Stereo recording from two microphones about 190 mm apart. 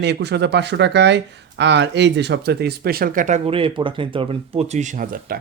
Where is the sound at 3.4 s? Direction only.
30° right (ahead or behind); by 5.4 s 45° right (ahead or behind).